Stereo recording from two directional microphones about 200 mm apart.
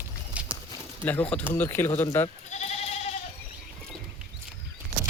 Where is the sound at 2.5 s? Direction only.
35° left (ahead or behind).